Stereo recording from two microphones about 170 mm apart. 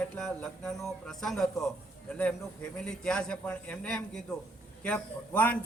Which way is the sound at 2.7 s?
5° left (ahead or behind).